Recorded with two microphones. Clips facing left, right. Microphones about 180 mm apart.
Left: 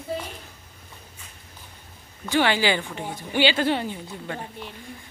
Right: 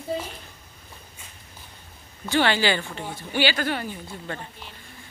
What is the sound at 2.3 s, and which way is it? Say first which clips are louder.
A woman's voice: even; 15° left (ahead or behind).